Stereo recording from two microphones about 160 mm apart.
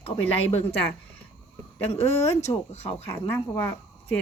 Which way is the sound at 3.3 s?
15° left (ahead or behind).